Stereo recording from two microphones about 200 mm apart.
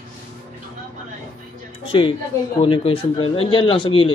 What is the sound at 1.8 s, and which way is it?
A woman's voice, 25° left (ahead or behind).